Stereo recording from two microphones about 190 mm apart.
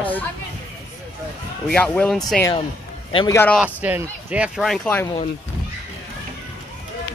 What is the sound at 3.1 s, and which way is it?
Speech, 20° left (ahead or behind).